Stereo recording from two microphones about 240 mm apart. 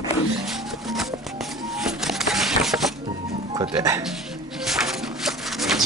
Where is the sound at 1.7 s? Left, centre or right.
Centre.